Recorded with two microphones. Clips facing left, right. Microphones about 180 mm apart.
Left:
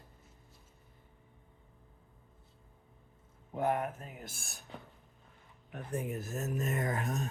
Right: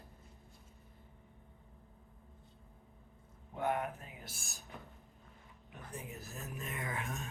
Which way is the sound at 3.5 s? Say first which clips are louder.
Left 4 dB; 40° left (ahead or behind).